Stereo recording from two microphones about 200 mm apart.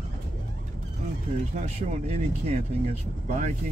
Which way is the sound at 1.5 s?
35° right (ahead or behind).